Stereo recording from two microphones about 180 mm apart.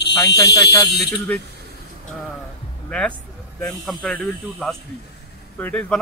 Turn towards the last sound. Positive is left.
turn(degrees=10)  # may be behind; listen again after turning